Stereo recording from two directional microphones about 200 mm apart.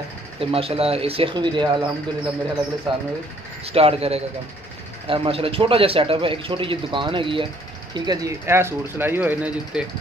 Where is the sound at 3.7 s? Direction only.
30° right (ahead or behind).